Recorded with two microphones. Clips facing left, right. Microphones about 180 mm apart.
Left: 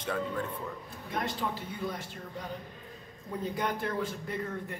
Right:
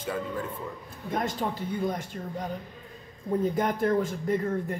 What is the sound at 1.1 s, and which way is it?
A woman's voice, 45° right (ahead or behind).